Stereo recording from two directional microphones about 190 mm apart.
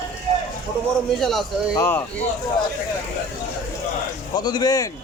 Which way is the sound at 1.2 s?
Centre (ahead or behind).